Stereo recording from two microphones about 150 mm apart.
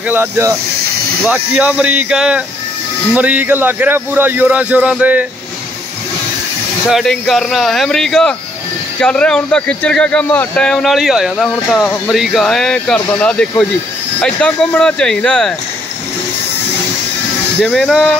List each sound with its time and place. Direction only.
0.1 s a man's voice: 15° right (ahead or behind)
6.9 s speech: centre (ahead or behind)
17.6 s speech: centre (ahead or behind)